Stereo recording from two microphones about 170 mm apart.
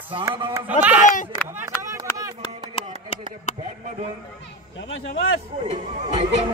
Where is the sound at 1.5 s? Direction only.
15° right (ahead or behind).